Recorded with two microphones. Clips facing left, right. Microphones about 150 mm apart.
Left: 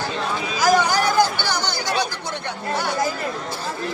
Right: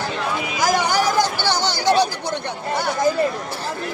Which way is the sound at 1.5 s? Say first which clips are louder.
Right 6 dB; 30° right (ahead or behind).